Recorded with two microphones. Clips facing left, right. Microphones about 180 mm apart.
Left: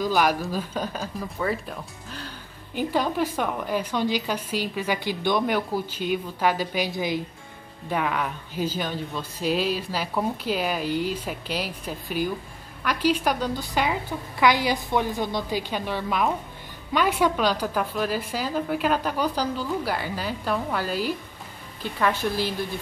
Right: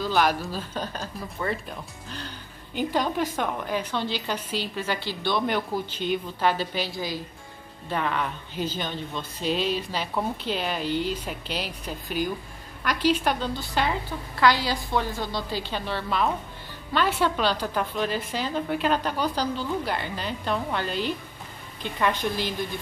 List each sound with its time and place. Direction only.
0.0 s a woman's voice: 10° left (ahead or behind)
7.9 s a woman's voice: 5° left (ahead or behind)